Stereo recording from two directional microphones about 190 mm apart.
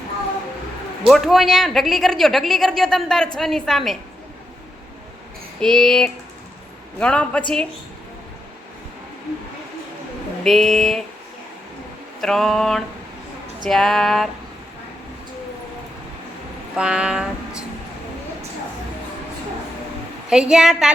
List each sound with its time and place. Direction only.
1.0 s a woman's voice: centre (ahead or behind)
5.5 s a woman's voice: 5° left (ahead or behind)
10.4 s a woman's voice: centre (ahead or behind)
12.2 s a woman's voice: centre (ahead or behind)
16.7 s a woman's voice: 5° right (ahead or behind)
20.3 s a woman's voice: 5° right (ahead or behind)